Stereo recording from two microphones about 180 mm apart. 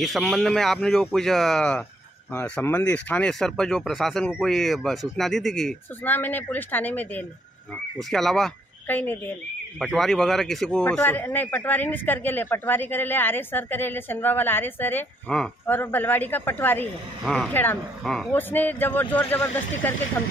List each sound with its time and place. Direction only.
0.0 s speech: centre (ahead or behind)
17.2 s speech: centre (ahead or behind)